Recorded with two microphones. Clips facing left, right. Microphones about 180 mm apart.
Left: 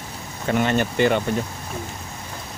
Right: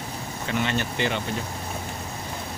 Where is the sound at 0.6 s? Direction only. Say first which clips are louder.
Left 7 dB; 50° left (ahead or behind).